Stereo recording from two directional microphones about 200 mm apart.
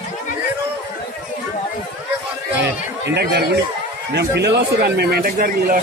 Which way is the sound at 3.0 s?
55° right (ahead or behind).